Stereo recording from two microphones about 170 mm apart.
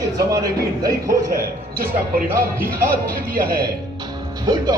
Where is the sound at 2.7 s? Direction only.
60° right (ahead or behind).